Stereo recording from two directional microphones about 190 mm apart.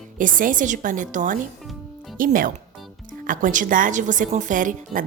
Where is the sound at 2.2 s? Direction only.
45° right (ahead or behind).